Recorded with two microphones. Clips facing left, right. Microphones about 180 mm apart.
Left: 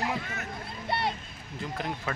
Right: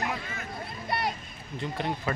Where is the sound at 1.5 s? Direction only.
Centre (ahead or behind).